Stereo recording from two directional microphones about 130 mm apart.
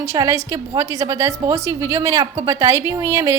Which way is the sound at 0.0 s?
20° right (ahead or behind).